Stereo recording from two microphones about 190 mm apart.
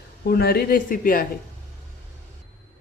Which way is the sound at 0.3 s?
55° left (ahead or behind).